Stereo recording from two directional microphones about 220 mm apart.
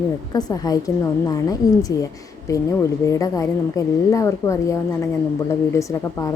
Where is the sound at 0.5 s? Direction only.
15° left (ahead or behind).